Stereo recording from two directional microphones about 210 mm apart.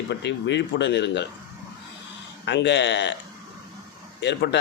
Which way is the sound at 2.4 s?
55° left (ahead or behind).